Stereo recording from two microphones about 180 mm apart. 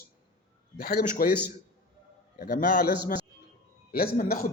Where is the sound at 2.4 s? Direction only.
60° left (ahead or behind).